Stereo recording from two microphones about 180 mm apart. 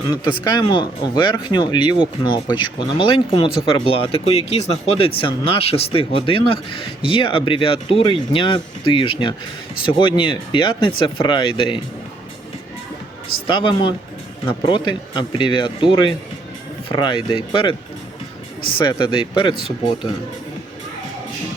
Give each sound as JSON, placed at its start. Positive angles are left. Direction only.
{"t": 0.4, "sound": "speech", "side_deg": 25}
{"t": 13.5, "sound": "speech", "side_deg": 30}